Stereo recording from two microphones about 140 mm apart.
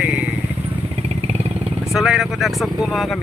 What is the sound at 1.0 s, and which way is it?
Vehicle, 50° right (ahead or behind).